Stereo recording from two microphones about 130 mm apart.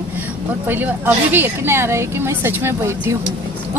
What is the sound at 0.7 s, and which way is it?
A woman's voice, 15° right (ahead or behind).